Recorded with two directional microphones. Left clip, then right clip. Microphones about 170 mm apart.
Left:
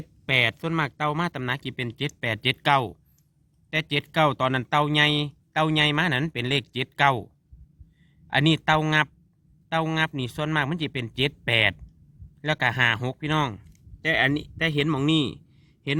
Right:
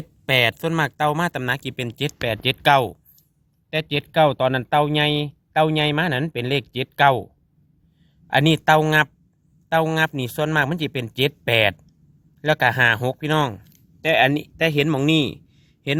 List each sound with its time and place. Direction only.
0.3 s speech: 35° right (ahead or behind)
8.3 s a man's voice: 30° right (ahead or behind)